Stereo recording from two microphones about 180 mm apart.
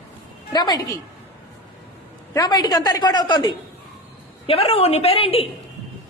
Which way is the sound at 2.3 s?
20° left (ahead or behind).